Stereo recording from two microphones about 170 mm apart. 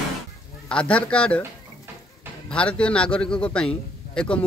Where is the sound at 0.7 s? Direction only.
5° left (ahead or behind).